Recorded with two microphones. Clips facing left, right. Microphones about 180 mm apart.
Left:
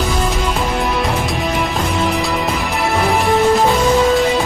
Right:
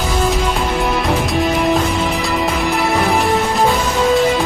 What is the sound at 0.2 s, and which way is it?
Music, centre (ahead or behind).